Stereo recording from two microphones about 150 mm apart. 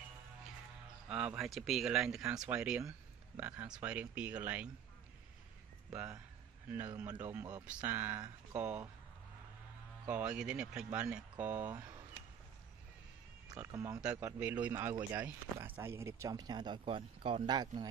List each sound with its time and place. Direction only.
1.0 s speech: 5° right (ahead or behind)
6.9 s speech: 25° right (ahead or behind)
7.2 s speech: 15° right (ahead or behind)
7.6 s speech: 10° right (ahead or behind)
10.0 s speech: 10° right (ahead or behind)
13.7 s speech: 25° right (ahead or behind)
14.4 s speech: 10° right (ahead or behind); by 17.8 s 30° right (ahead or behind)